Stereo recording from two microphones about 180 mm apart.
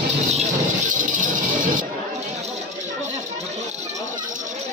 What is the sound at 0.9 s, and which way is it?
Music, 45° right (ahead or behind).